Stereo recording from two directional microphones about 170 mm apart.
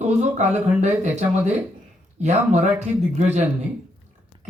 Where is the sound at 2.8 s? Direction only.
40° right (ahead or behind).